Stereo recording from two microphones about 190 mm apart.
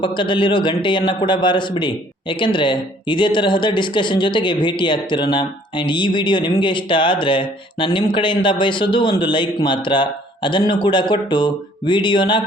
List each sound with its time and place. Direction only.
0.0 s a man's voice: 25° left (ahead or behind)